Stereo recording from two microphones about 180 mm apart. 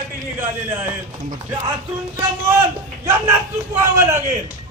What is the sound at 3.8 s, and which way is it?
Speech, 15° right (ahead or behind).